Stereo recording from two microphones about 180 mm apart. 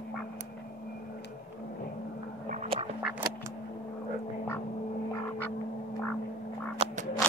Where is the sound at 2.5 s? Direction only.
35° right (ahead or behind).